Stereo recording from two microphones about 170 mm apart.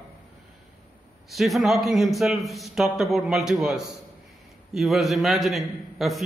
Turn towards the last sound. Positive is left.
turn(degrees=0)  # may be behind; listen again after turning